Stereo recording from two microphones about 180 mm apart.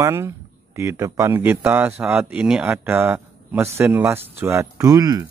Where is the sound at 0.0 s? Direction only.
15° right (ahead or behind).